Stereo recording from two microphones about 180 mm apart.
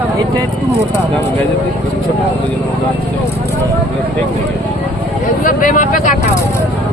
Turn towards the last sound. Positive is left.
turn(degrees=45)  # may be behind; listen again after turning